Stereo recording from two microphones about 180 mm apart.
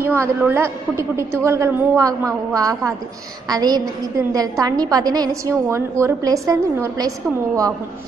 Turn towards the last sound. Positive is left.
turn(degrees=-20)  # may be behind; listen again after turning